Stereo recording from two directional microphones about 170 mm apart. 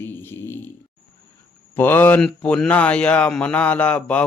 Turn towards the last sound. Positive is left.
turn(degrees=5)  # may be behind; listen again after turning